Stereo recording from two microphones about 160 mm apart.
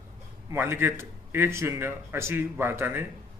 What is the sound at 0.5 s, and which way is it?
A man's voice, 15° right (ahead or behind).